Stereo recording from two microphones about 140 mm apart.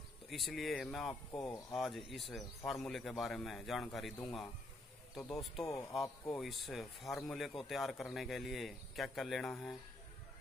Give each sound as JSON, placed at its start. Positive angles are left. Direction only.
{"t": 0.3, "sound": "a man's voice", "side_deg": 0}
{"t": 5.1, "sound": "a man's voice", "side_deg": 0}
{"t": 5.6, "sound": "speech", "side_deg": 25}
{"t": 6.3, "sound": "a man's voice", "side_deg": 0}